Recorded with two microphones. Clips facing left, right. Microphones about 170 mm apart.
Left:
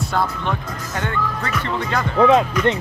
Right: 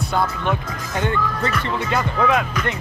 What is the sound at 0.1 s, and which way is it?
Speech, centre (ahead or behind).